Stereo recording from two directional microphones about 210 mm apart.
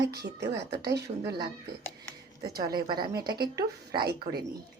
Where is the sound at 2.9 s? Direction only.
45° right (ahead or behind).